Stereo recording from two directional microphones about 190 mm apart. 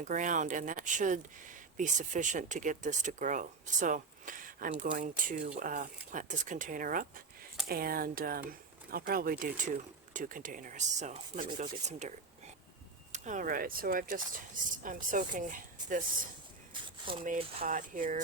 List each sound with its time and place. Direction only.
0.0 s speech: 40° right (ahead or behind)
13.1 s speech: 40° right (ahead or behind)